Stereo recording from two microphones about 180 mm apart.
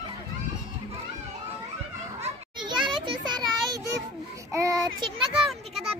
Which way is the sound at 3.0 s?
25° right (ahead or behind).